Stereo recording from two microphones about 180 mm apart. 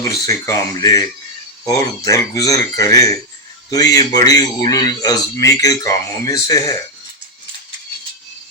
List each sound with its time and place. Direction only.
0.0 s a man's voice: 20° left (ahead or behind)